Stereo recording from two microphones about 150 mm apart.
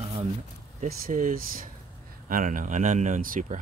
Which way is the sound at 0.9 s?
65° right (ahead or behind).